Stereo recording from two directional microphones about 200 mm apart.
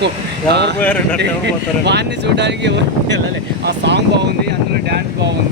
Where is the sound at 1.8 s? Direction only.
60° right (ahead or behind).